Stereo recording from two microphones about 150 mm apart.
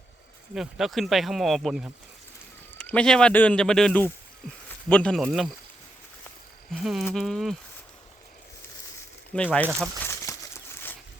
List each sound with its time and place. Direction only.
0.5 s speech: centre (ahead or behind)
6.7 s speech: 5° right (ahead or behind)
9.3 s speech: 10° left (ahead or behind)
10.1 s a sound: 20° left (ahead or behind)